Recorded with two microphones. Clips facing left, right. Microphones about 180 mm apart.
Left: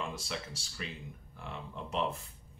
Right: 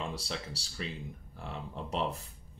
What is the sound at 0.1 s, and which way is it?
Speech, 35° right (ahead or behind).